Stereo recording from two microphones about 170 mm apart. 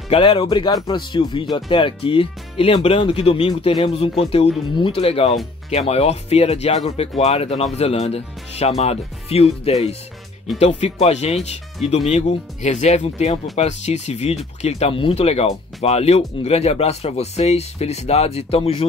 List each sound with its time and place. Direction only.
0.1 s speech: 35° left (ahead or behind)